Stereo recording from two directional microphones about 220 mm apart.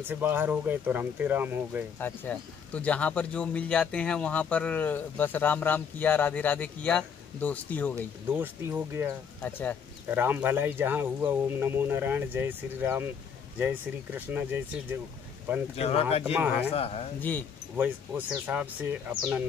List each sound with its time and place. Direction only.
0.0 s speech: 10° right (ahead or behind)
2.0 s speech: 10° left (ahead or behind)
8.3 s speech: 10° right (ahead or behind)
9.4 s speech: 10° left (ahead or behind)
10.0 s speech: 10° right (ahead or behind)
15.7 s speech: 25° left (ahead or behind)
16.3 s speech: 10° right (ahead or behind)
16.7 s speech: 25° left (ahead or behind)
17.2 s speech: 10° left (ahead or behind)
17.7 s speech: 10° right (ahead or behind)